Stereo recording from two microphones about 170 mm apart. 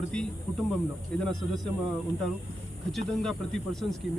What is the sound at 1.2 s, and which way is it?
Speech, 5° left (ahead or behind).